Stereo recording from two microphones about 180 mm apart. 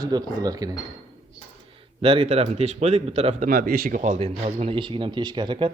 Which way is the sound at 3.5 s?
55° right (ahead or behind).